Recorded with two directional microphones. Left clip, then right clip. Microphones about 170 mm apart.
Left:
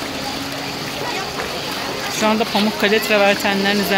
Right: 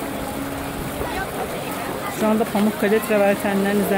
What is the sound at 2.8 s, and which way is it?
Speech, 10° right (ahead or behind).